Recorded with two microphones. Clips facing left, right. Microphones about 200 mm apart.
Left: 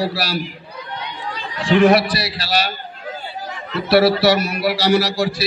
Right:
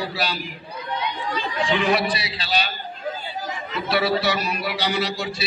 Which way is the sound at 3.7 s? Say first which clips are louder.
Left 8 dB; 70° left (ahead or behind).